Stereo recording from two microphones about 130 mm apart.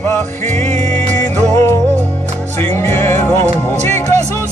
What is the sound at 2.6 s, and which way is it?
Music, 15° left (ahead or behind).